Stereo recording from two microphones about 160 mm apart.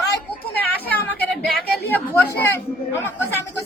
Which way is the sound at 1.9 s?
10° left (ahead or behind).